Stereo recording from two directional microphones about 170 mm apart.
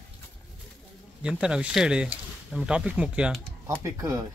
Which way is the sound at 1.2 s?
5° right (ahead or behind).